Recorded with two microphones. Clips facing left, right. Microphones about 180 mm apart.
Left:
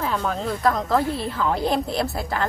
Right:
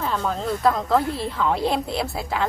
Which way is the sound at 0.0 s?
Centre (ahead or behind).